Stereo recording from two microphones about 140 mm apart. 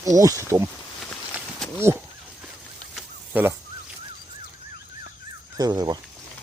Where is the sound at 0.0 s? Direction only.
25° right (ahead or behind).